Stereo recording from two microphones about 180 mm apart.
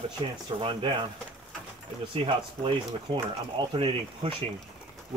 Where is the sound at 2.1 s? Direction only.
30° right (ahead or behind).